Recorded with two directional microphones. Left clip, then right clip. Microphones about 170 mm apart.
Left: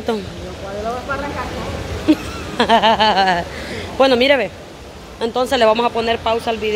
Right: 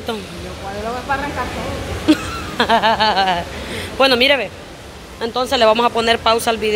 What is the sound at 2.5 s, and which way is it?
Snicker, 25° left (ahead or behind).